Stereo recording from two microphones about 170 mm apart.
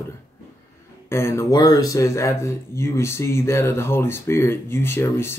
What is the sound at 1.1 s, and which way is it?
Speech, 15° left (ahead or behind).